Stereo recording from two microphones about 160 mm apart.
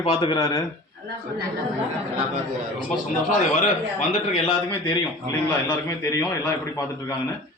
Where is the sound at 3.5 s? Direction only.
50° left (ahead or behind).